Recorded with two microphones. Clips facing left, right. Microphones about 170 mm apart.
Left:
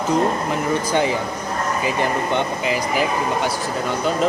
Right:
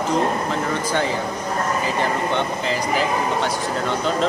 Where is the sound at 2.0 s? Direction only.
15° left (ahead or behind).